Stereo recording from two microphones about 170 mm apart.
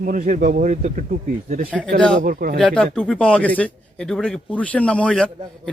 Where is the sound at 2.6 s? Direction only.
5° left (ahead or behind).